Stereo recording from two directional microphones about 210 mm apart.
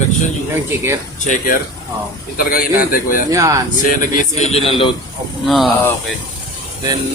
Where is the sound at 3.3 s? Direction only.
15° right (ahead or behind).